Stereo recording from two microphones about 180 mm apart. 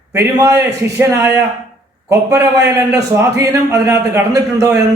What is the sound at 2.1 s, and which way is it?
A man's voice, 15° right (ahead or behind).